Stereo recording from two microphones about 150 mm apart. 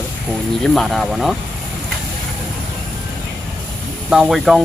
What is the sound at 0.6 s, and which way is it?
Speech, centre (ahead or behind).